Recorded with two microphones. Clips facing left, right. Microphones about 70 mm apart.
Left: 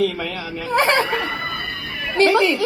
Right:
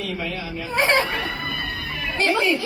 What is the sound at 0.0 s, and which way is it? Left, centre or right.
Speech, left.